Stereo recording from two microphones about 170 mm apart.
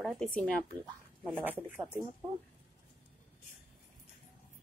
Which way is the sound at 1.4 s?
10° right (ahead or behind).